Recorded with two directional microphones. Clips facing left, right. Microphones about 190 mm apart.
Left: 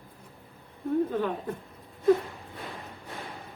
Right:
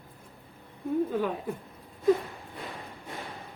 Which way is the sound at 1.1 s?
10° right (ahead or behind).